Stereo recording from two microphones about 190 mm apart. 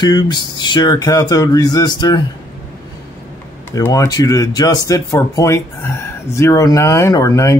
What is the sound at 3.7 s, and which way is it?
Speech, 15° left (ahead or behind).